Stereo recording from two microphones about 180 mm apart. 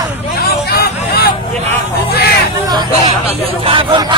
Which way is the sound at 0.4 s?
60° left (ahead or behind).